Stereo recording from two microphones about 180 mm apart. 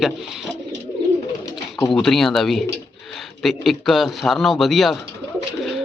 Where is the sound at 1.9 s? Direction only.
Centre (ahead or behind).